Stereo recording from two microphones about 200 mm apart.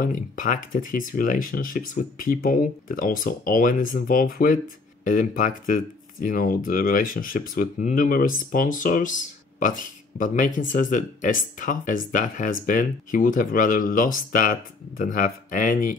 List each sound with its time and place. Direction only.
0.0 s speech: 40° left (ahead or behind)